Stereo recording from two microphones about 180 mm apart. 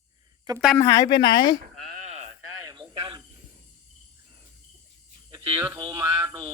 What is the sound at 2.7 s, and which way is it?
Cricket, 30° right (ahead or behind).